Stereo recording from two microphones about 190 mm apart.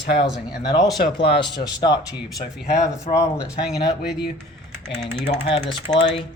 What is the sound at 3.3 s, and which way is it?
Speech, 5° right (ahead or behind).